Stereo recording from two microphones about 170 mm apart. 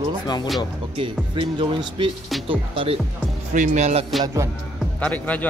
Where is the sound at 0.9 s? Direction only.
30° right (ahead or behind).